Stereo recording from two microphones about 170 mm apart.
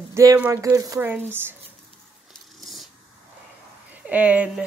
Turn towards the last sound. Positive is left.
turn(degrees=-10)  # may be behind; listen again after turning